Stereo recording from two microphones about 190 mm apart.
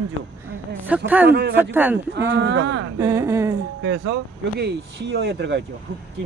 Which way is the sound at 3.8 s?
75° right (ahead or behind).